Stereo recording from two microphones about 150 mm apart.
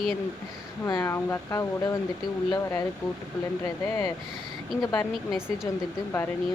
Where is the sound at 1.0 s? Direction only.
15° left (ahead or behind).